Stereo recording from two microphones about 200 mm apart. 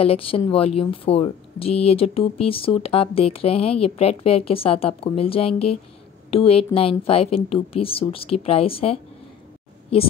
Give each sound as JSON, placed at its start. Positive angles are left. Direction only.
{"t": 0.0, "sound": "speech", "side_deg": 30}